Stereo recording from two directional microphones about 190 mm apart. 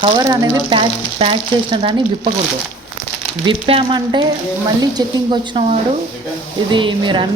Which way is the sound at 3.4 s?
25° right (ahead or behind).